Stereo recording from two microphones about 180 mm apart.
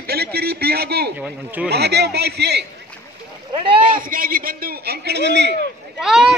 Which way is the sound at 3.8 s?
50° right (ahead or behind).